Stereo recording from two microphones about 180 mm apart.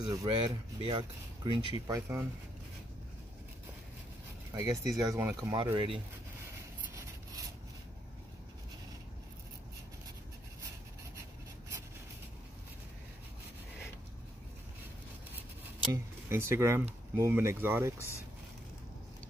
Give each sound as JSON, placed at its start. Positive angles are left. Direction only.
{"t": 0.0, "sound": "speech", "side_deg": -20}
{"t": 1.9, "sound": "speech", "side_deg": -15}
{"t": 4.6, "sound": "speech", "side_deg": -20}
{"t": 5.6, "sound": "speech", "side_deg": -25}
{"t": 15.9, "sound": "speech", "side_deg": -15}